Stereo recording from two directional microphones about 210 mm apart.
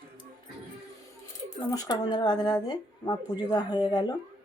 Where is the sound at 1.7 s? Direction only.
20° left (ahead or behind).